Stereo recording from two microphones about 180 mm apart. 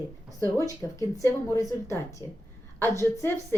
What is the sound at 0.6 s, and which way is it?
Speech, 20° left (ahead or behind).